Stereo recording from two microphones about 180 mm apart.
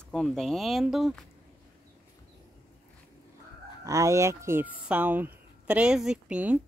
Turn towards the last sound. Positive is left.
turn(degrees=-5)  # may be behind; listen again after turning